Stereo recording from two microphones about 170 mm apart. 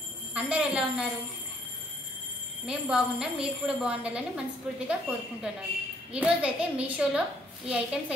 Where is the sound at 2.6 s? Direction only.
5° right (ahead or behind).